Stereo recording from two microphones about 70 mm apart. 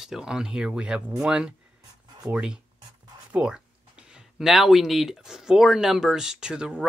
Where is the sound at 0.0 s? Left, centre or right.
Centre.